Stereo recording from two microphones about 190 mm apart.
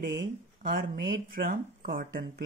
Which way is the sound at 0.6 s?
50° right (ahead or behind).